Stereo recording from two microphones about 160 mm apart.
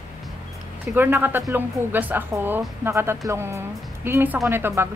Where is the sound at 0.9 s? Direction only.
10° right (ahead or behind).